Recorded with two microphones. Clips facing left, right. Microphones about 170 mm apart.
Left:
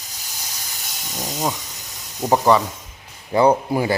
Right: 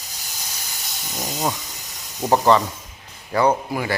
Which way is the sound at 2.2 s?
10° left (ahead or behind).